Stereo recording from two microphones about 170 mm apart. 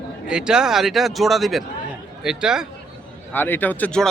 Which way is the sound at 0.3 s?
5° right (ahead or behind).